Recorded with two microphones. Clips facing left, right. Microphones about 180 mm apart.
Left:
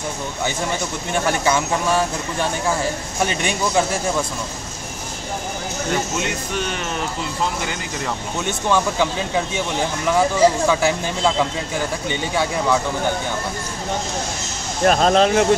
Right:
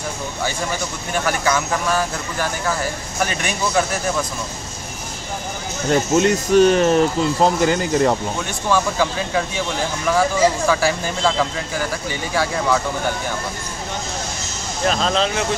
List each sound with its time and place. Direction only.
0.7 s speech: 25° left (ahead or behind)
6.1 s speech: 40° right (ahead or behind)
8.5 s speech: 20° left (ahead or behind)
14.9 s speech: 50° left (ahead or behind)